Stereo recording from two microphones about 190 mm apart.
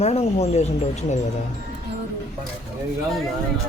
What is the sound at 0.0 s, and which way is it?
Speech, 35° left (ahead or behind).